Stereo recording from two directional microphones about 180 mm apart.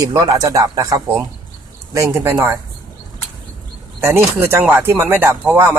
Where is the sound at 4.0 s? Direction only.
15° right (ahead or behind).